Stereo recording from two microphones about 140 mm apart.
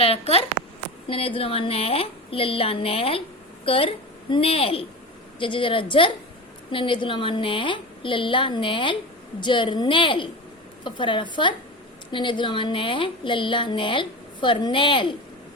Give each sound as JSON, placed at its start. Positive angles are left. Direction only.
{"t": 0.0, "sound": "a woman's voice", "side_deg": 45}